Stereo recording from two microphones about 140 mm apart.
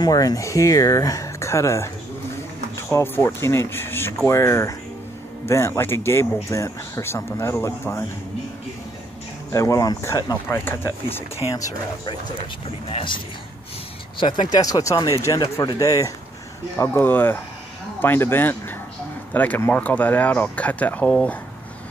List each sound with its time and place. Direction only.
0.0 s speech: 25° left (ahead or behind)
2.9 s speech: 20° left (ahead or behind)
9.5 s speech: 20° left (ahead or behind)
12.4 s speech: 40° left (ahead or behind); by 21.4 s 10° left (ahead or behind)